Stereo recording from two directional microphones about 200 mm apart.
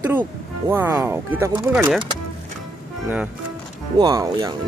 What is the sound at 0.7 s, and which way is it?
Speech, 10° right (ahead or behind).